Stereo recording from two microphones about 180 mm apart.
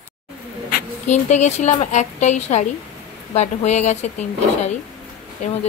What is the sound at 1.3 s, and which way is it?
A woman's voice, 40° left (ahead or behind).